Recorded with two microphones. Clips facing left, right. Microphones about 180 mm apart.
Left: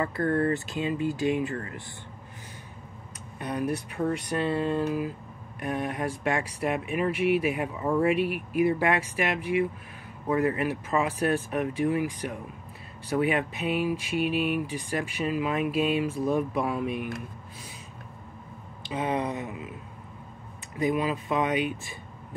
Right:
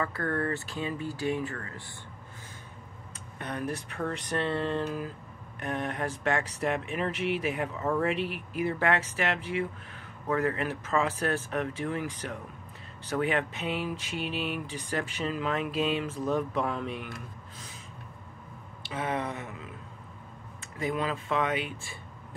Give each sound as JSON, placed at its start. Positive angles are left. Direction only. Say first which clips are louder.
{"t": 0.0, "sound": "speech", "louder": "left 5 dB", "side_deg": 20}
{"t": 3.3, "sound": "speech", "louder": "left 5 dB", "side_deg": 10}
{"t": 18.8, "sound": "speech", "louder": "left 4 dB", "side_deg": 15}
{"t": 20.8, "sound": "speech", "louder": "left 4 dB", "side_deg": 10}